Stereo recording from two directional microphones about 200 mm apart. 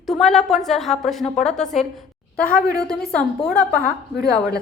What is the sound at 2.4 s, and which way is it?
A woman's voice, 45° left (ahead or behind).